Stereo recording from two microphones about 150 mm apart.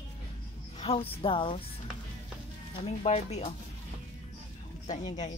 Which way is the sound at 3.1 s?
50° left (ahead or behind).